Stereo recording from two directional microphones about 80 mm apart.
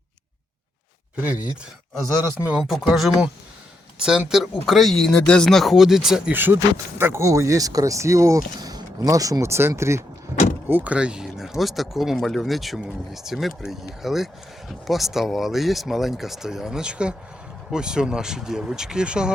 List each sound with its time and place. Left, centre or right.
1.1 s speech: centre
2.9 s speech: centre
6.3 s speech: right
7.0 s speech: right
10.9 s speech: centre